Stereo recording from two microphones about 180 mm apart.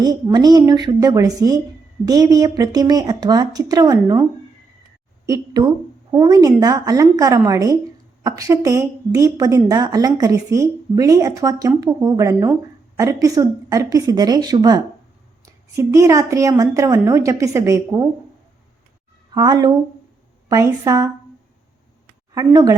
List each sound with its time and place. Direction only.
0.0 s a woman's voice: 20° right (ahead or behind)
5.2 s a woman's voice: 20° right (ahead or behind)
19.3 s a woman's voice: 25° right (ahead or behind)
22.4 s a woman's voice: 20° right (ahead or behind)